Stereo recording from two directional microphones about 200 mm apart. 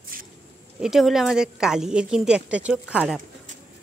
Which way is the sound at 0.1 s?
45° right (ahead or behind).